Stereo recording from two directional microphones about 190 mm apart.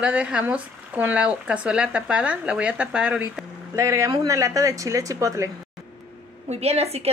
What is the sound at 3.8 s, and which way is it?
Speech, 15° right (ahead or behind).